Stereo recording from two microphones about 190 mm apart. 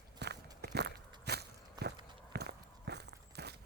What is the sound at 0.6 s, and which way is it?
Biting, 60° right (ahead or behind).